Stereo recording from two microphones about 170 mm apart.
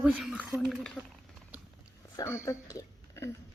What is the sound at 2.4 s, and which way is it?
Speech, 20° left (ahead or behind).